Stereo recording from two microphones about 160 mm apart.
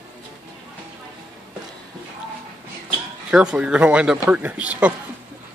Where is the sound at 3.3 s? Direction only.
5° right (ahead or behind).